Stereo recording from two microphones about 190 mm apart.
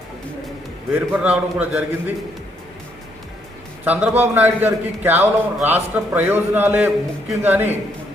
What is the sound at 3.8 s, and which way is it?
A man's voice, 10° right (ahead or behind).